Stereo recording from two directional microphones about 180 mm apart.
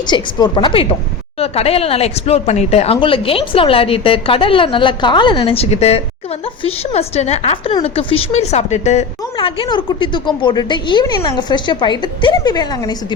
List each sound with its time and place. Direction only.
0.1 s a woman's voice: 25° left (ahead or behind)